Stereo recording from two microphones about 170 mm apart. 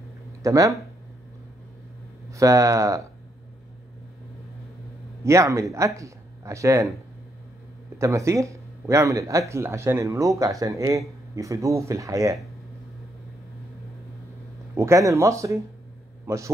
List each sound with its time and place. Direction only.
0.4 s speech: 20° right (ahead or behind)
2.3 s speech: 20° right (ahead or behind)
5.2 s speech: 15° right (ahead or behind)
8.0 s speech: 15° right (ahead or behind)
14.8 s a man's voice: 20° right (ahead or behind)